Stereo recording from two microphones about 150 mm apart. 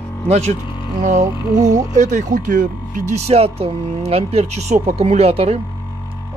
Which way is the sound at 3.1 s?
45° right (ahead or behind).